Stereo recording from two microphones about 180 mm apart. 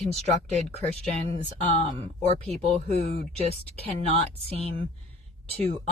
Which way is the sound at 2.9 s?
35° right (ahead or behind).